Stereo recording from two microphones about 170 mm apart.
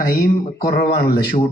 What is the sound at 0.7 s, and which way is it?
Speech, 60° left (ahead or behind).